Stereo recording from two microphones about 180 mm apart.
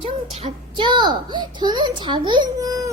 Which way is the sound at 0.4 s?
25° right (ahead or behind).